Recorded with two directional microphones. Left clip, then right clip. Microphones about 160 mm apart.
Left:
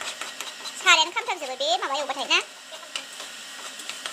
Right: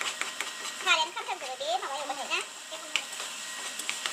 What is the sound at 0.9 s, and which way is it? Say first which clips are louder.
A child's voice: left 8 dB; 30° left (ahead or behind).